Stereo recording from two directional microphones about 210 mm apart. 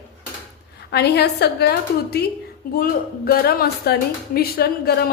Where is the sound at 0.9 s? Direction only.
50° left (ahead or behind).